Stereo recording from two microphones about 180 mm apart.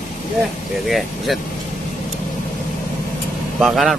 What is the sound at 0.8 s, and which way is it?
Speech, centre (ahead or behind).